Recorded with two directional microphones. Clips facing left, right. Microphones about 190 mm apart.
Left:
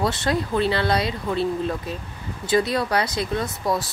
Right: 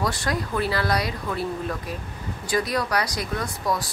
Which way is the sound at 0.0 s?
25° left (ahead or behind).